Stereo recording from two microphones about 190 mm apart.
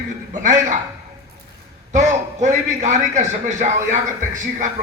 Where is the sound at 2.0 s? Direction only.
35° right (ahead or behind).